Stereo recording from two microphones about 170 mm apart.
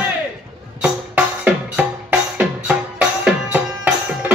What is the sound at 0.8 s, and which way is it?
Music, 5° right (ahead or behind).